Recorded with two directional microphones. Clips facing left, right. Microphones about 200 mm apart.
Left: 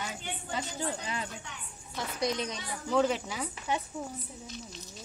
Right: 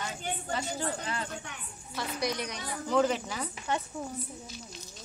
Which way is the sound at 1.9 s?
20° left (ahead or behind).